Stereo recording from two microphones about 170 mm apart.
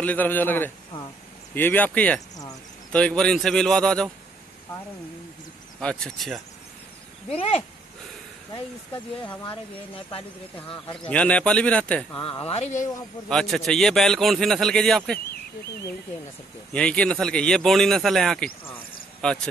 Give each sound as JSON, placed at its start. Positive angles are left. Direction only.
{"t": 0.0, "sound": "a man's voice", "side_deg": 10}
{"t": 5.8, "sound": "a man's voice", "side_deg": 5}
{"t": 7.2, "sound": "speech", "side_deg": 35}
{"t": 8.9, "sound": "speech", "side_deg": 10}
{"t": 10.7, "sound": "speech", "side_deg": 30}
{"t": 11.1, "sound": "speech", "side_deg": 5}
{"t": 12.2, "sound": "speech", "side_deg": 30}
{"t": 13.3, "sound": "a man's voice", "side_deg": 0}
{"t": 16.7, "sound": "a man's voice", "side_deg": 5}